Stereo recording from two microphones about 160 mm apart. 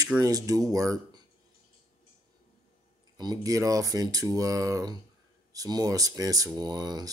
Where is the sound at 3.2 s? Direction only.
25° right (ahead or behind).